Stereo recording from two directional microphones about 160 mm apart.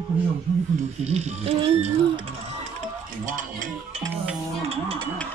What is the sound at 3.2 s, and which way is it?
Speech, 55° right (ahead or behind).